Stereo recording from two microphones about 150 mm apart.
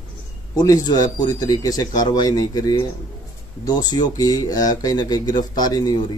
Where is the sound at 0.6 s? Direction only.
25° left (ahead or behind).